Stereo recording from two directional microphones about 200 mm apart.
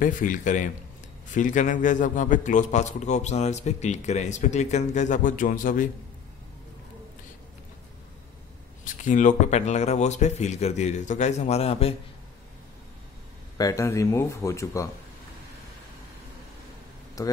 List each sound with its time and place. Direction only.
0.0 s a man's voice: 40° left (ahead or behind)
8.8 s a man's voice: 40° left (ahead or behind)
13.6 s speech: 15° left (ahead or behind)
17.2 s speech: 15° left (ahead or behind)